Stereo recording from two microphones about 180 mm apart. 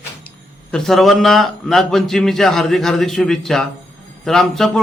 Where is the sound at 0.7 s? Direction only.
Centre (ahead or behind).